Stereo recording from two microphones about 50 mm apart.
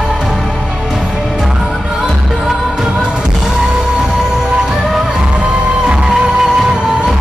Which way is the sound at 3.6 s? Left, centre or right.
Centre.